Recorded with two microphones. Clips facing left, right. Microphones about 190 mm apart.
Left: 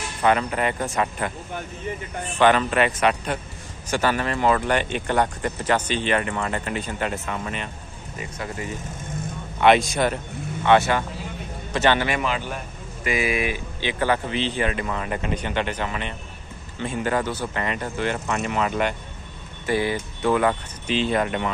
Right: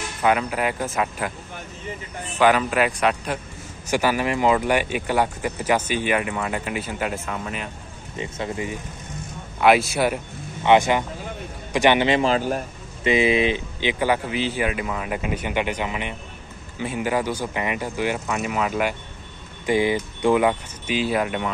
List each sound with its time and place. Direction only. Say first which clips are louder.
0.2 s speech: even; 5° right (ahead or behind)
2.3 s speech: even; 5° right (ahead or behind)
3.9 s speech: right 2 dB; 10° right (ahead or behind)
8.2 s speech: right 4 dB; 25° right (ahead or behind)
9.6 s speech: even; 5° right (ahead or behind); by 12.3 s 20° right (ahead or behind)
12.3 s a man's voice: right 6 dB; 40° right (ahead or behind)
13.0 s speech: right 5 dB; 25° right (ahead or behind); by 18.9 s 5° right (ahead or behind)
19.6 s speech: right 3 dB; 15° right (ahead or behind)